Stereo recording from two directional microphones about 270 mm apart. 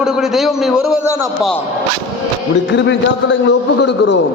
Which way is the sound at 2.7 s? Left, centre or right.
Left.